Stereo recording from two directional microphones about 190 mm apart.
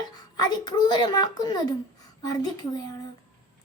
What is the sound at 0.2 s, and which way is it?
A child's voice, 20° left (ahead or behind).